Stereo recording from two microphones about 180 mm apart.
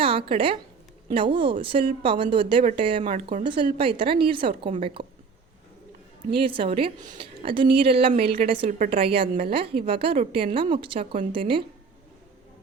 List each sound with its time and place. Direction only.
0.0 s speech: 30° right (ahead or behind)
6.3 s a woman's voice: 30° right (ahead or behind)